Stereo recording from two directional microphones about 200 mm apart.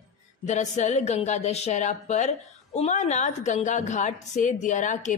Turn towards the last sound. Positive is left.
turn(degrees=40)  # may be behind; listen again after turning